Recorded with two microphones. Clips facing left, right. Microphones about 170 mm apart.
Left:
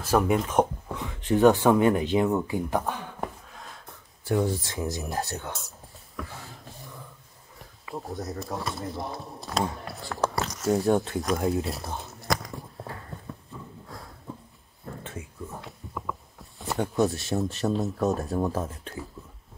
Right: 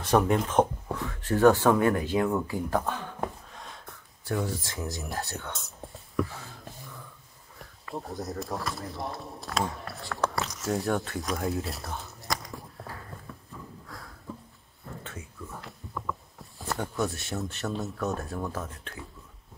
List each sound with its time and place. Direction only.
0.0 s speech: 5° left (ahead or behind)
3.2 s a sound: centre (ahead or behind)
4.4 s speech: 20° left (ahead or behind)
7.8 s speech: centre (ahead or behind)
10.9 s speech: 20° left (ahead or behind)
11.6 s speech: centre (ahead or behind)
12.1 s biting: centre (ahead or behind)
13.8 s a sound: 25° left (ahead or behind)
15.6 s a sound: 5° left (ahead or behind)
16.7 s speech: 25° left (ahead or behind)